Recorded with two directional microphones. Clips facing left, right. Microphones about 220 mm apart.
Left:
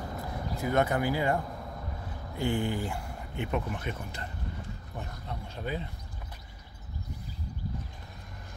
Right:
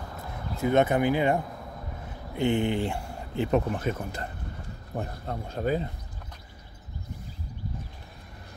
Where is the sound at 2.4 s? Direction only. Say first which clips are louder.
Right 5 dB; 20° right (ahead or behind).